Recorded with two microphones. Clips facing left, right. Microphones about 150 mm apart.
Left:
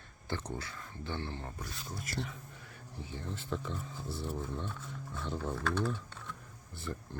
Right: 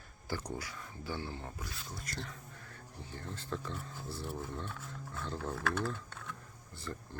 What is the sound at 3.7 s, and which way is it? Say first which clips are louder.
Speech: left 2 dB; centre (ahead or behind).